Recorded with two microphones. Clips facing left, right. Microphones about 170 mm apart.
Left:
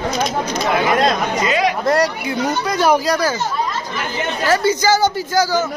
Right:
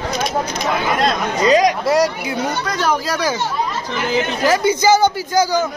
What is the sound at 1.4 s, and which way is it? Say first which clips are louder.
Speech: right 7 dB; 40° right (ahead or behind).